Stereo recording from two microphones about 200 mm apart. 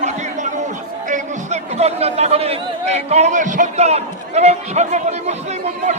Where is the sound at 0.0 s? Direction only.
35° right (ahead or behind).